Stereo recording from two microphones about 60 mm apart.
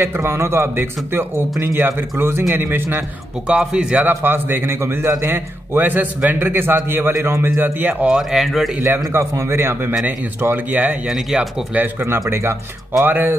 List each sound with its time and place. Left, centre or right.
0.0 s a man's voice: right
3.4 s a man's voice: centre
4.1 s a man's voice: right
8.2 s speech: centre
9.1 s a man's voice: right
11.1 s a man's voice: centre
11.7 s a man's voice: right
13.0 s a man's voice: right